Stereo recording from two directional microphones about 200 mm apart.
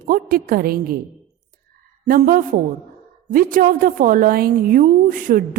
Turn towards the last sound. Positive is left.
turn(degrees=-45)  # may be behind; listen again after turning